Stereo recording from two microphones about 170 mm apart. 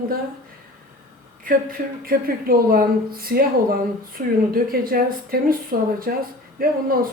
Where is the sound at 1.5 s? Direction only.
60° right (ahead or behind).